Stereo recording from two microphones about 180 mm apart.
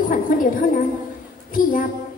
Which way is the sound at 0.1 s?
50° left (ahead or behind).